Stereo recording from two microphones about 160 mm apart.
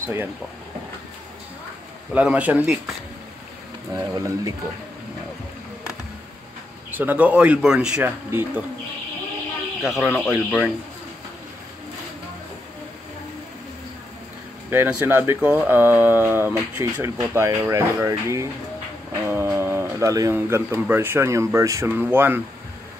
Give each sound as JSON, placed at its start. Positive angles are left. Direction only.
{"t": 0.0, "sound": "speech", "side_deg": -15}
{"t": 2.1, "sound": "speech", "side_deg": -10}
{"t": 3.9, "sound": "speech", "side_deg": -25}
{"t": 6.9, "sound": "speech", "side_deg": -10}
{"t": 9.8, "sound": "speech", "side_deg": 0}
{"t": 14.7, "sound": "speech", "side_deg": -15}
{"t": 19.2, "sound": "a sound", "side_deg": -15}
{"t": 20.8, "sound": "speech", "side_deg": -15}